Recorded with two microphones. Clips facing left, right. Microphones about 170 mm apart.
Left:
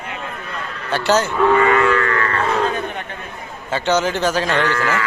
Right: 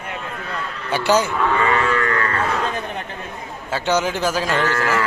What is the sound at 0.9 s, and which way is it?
Speech, 10° right (ahead or behind).